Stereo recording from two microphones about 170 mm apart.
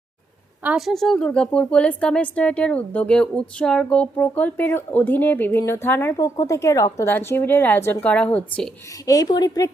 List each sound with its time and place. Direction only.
0.6 s a woman's voice: 5° right (ahead or behind)
9.0 s a woman's voice: 20° left (ahead or behind)